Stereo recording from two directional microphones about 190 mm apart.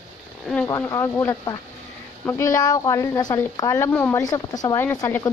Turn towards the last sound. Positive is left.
turn(degrees=10)  # may be behind; listen again after turning